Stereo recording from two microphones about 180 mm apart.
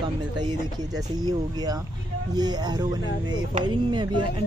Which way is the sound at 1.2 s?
20° right (ahead or behind).